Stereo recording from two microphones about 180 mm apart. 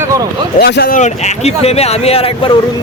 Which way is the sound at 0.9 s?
40° left (ahead or behind).